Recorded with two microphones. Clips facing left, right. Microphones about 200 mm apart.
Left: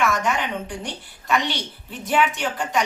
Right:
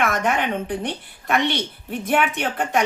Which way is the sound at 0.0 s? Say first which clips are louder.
Right 1 dB; 55° right (ahead or behind).